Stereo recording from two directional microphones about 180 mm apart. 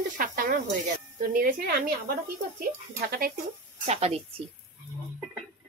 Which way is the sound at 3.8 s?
35° right (ahead or behind).